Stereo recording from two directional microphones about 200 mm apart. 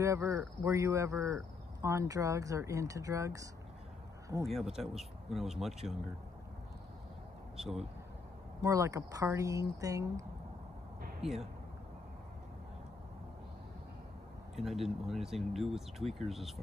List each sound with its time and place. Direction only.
0.0 s speech: 15° right (ahead or behind)
4.5 s speech: centre (ahead or behind)
7.6 s speech: centre (ahead or behind)
8.6 s speech: 15° right (ahead or behind)
14.5 s speech: centre (ahead or behind)